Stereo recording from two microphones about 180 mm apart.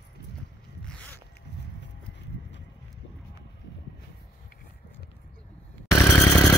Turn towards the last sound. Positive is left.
turn(degrees=15)  # may be behind; listen again after turning